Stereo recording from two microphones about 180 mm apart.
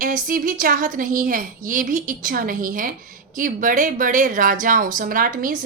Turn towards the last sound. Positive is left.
turn(degrees=-50)  # may be behind; listen again after turning